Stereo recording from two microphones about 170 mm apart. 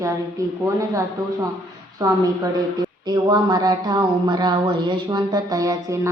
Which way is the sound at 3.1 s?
25° right (ahead or behind).